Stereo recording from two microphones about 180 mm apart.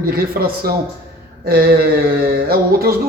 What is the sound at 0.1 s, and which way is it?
A man's voice, 60° right (ahead or behind).